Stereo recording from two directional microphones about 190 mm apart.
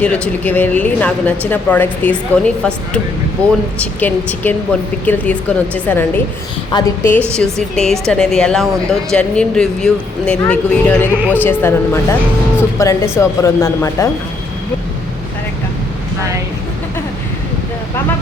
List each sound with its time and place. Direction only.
0.0 s speech: 10° left (ahead or behind)
7.3 s speech: centre (ahead or behind)